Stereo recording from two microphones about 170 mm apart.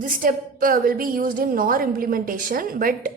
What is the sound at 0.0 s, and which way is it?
A woman's voice, 55° right (ahead or behind).